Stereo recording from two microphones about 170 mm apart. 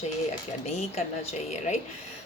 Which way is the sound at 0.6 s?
40° left (ahead or behind).